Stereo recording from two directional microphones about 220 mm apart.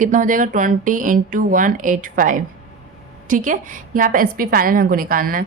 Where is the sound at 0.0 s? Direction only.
35° right (ahead or behind).